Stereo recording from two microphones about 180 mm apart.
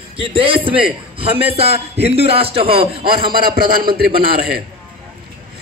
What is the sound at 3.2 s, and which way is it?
Speech, 55° right (ahead or behind).